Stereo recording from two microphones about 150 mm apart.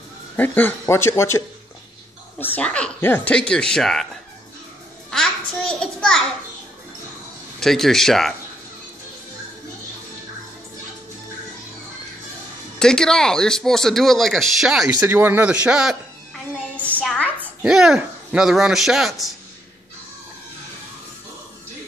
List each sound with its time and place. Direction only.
0.4 s speech: 10° left (ahead or behind)
2.4 s speech: 10° left (ahead or behind)
5.1 s a child's voice: 5° left (ahead or behind)
7.6 s speech: centre (ahead or behind)
12.7 s speech: 5° left (ahead or behind)
15.0 s a man's voice: 15° right (ahead or behind)
16.5 s a sound: 10° left (ahead or behind)
17.0 s speech: 5° left (ahead or behind)
17.6 s speech: 5° right (ahead or behind)